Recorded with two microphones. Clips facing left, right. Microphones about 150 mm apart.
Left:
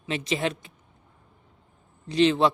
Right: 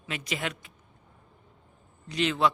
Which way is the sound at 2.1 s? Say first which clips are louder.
Left 6 dB; 30° left (ahead or behind).